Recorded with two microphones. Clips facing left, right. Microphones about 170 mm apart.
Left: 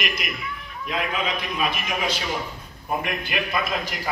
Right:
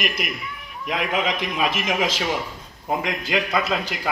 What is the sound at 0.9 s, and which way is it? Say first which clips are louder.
A man's voice: right 3 dB; 90° right.